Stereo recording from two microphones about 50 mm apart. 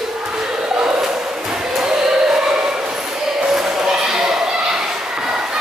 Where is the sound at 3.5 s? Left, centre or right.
Centre.